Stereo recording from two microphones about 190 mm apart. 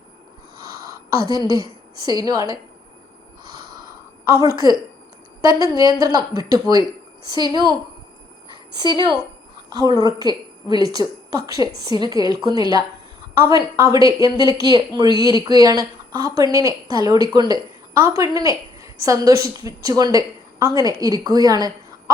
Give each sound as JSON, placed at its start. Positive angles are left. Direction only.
{"t": 2.0, "sound": "a woman's voice", "side_deg": -20}
{"t": 4.3, "sound": "a woman's voice", "side_deg": -20}